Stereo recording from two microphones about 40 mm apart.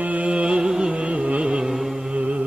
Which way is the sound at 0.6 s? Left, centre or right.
Centre.